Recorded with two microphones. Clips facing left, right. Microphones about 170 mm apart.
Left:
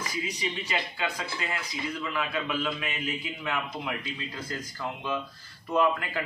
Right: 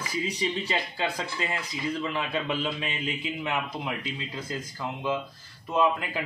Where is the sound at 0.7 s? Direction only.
35° right (ahead or behind).